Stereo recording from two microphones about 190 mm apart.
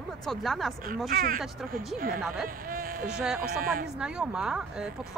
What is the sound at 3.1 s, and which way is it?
Speech, 5° right (ahead or behind).